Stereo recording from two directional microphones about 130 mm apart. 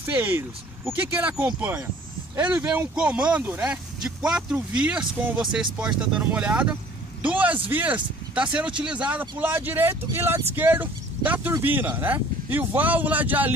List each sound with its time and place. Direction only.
0.0 s speech: 15° right (ahead or behind)